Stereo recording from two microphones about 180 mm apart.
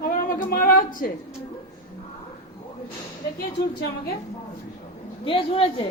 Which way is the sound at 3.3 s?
55° left (ahead or behind).